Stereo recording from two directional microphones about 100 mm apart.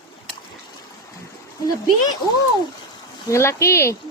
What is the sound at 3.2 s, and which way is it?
Speech, 30° left (ahead or behind).